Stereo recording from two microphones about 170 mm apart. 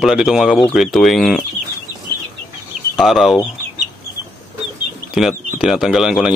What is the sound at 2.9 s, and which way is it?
Speech, centre (ahead or behind).